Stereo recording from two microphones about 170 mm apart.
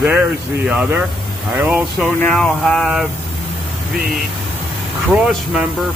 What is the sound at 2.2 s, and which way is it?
Speech, 5° left (ahead or behind).